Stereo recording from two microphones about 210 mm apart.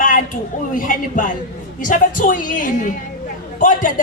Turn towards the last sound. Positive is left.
turn(degrees=40)  # may be behind; listen again after turning